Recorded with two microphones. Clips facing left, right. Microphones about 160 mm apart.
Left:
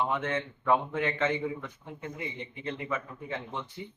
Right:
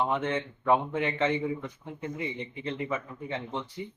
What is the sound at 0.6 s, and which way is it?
A man's voice, 20° right (ahead or behind).